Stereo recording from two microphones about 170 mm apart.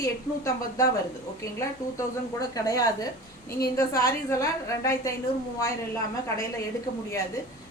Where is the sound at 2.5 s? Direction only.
20° left (ahead or behind).